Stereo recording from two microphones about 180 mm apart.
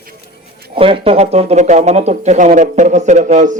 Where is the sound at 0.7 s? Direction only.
30° right (ahead or behind).